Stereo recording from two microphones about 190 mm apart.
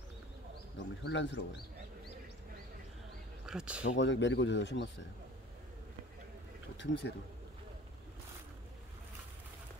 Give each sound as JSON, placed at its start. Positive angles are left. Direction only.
{"t": 1.0, "sound": "speech", "side_deg": 70}
{"t": 3.4, "sound": "speech", "side_deg": -5}
{"t": 3.9, "sound": "speech", "side_deg": 75}
{"t": 6.8, "sound": "speech", "side_deg": 65}